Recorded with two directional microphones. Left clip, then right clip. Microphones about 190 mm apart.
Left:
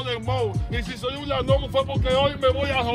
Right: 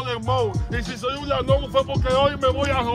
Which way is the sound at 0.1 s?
10° right (ahead or behind).